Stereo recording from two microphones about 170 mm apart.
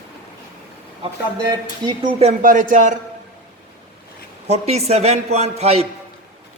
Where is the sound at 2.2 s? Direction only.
50° right (ahead or behind).